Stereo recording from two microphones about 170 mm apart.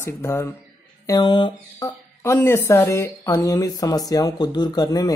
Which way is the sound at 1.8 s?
15° left (ahead or behind).